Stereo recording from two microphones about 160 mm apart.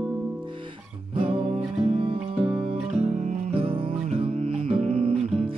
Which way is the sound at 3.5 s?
35° right (ahead or behind).